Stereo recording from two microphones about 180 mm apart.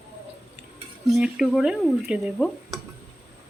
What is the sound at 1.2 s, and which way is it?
Speech, 5° right (ahead or behind).